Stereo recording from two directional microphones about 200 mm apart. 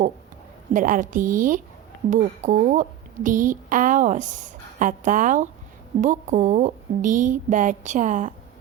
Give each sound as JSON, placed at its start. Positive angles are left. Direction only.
{"t": 0.7, "sound": "a woman's voice", "side_deg": -40}